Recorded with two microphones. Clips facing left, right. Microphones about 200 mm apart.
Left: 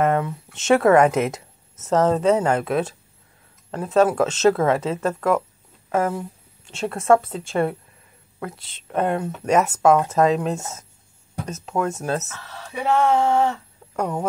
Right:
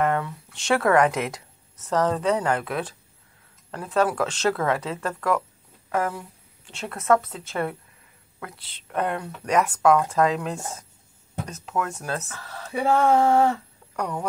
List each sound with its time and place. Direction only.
0.0 s a woman's voice: 20° left (ahead or behind)
8.8 s a woman's voice: 25° left (ahead or behind)
12.7 s a sound: 50° right (ahead or behind)
13.9 s speech: 25° left (ahead or behind)